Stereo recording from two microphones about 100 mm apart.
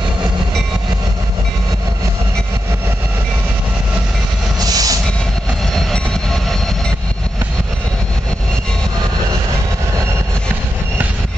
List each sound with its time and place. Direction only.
4.6 s train: 40° right (ahead or behind)